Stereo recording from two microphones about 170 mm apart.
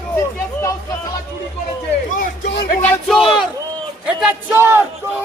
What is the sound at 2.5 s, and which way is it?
Music, 60° left (ahead or behind).